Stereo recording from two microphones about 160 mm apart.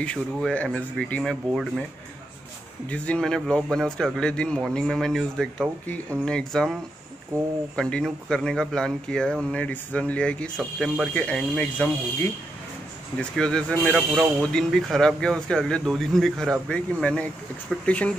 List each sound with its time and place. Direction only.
0.0 s speech: 5° left (ahead or behind)
2.9 s speech: 5° left (ahead or behind)
13.2 s speech: 5° left (ahead or behind)